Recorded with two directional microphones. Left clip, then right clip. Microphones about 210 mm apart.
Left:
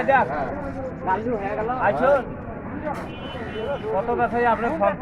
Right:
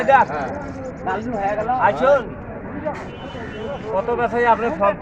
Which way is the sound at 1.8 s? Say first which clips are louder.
Right 3 dB; 45° right (ahead or behind).